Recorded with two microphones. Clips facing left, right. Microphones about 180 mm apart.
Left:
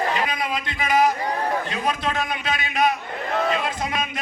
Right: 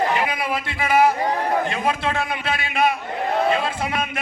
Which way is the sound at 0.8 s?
30° right (ahead or behind).